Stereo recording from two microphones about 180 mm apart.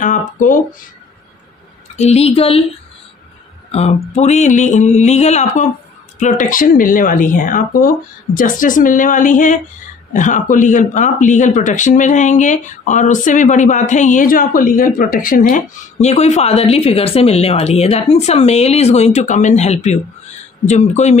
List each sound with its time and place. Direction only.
0.0 s a sound: 45° left (ahead or behind)
2.0 s speech: 35° left (ahead or behind)
3.7 s speech: 35° left (ahead or behind)